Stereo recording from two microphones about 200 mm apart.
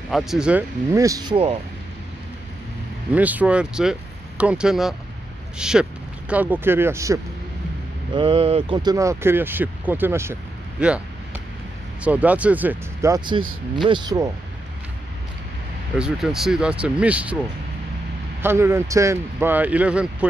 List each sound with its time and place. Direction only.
0.1 s speech: centre (ahead or behind); by 1.6 s 25° right (ahead or behind)
3.1 s speech: 5° right (ahead or behind)
8.1 s speech: 25° right (ahead or behind); by 10.3 s 10° right (ahead or behind)
10.8 s a sound: 5° right (ahead or behind)
12.0 s speech: 5° right (ahead or behind)
16.0 s speech: centre (ahead or behind)
18.4 s speech: 10° right (ahead or behind)